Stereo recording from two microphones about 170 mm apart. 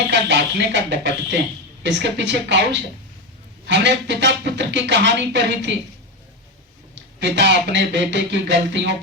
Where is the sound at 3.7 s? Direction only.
90° right.